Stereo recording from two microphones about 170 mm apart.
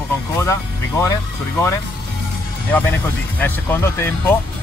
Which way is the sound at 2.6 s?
10° left (ahead or behind).